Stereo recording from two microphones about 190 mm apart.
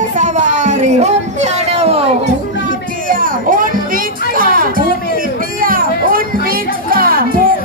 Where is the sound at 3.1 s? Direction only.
45° right (ahead or behind).